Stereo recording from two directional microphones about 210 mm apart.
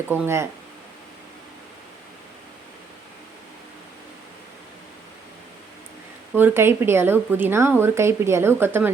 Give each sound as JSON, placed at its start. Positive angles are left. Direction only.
{"t": 0.1, "sound": "speech", "side_deg": -10}
{"t": 6.3, "sound": "speech", "side_deg": -10}